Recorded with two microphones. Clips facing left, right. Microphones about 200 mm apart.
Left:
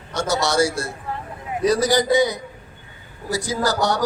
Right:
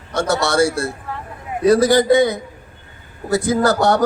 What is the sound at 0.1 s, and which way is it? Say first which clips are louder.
A man's voice: right 3 dB; 60° right (ahead or behind).